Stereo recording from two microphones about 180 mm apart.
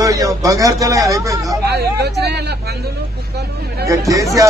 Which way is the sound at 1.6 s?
65° right (ahead or behind).